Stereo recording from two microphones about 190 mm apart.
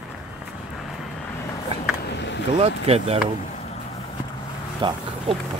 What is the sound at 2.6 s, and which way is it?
Speech, 30° right (ahead or behind).